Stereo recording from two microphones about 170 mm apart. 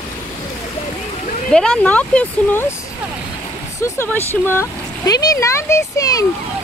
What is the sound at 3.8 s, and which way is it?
Speech, 15° left (ahead or behind).